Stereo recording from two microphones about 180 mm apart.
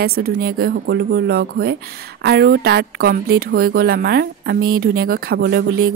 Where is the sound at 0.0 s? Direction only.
60° right (ahead or behind).